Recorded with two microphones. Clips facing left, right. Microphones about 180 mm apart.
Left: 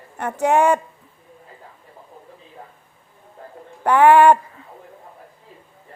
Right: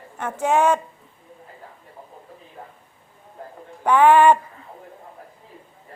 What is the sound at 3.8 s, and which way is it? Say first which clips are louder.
Speech: left 2 dB; 10° left (ahead or behind).